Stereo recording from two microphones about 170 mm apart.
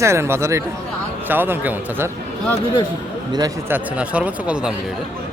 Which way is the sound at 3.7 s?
10° right (ahead or behind).